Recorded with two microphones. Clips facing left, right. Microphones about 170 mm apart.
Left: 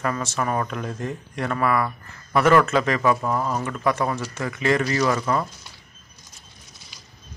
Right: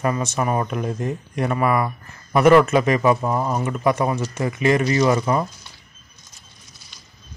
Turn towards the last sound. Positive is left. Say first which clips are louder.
# right 4 dB
turn(degrees=-20)  # may be behind; listen again after turning